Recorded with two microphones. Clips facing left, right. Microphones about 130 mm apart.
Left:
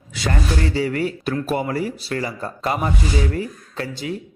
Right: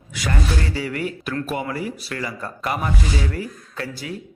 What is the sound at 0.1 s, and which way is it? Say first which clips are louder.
A man's voice: left 2 dB; 30° left (ahead or behind).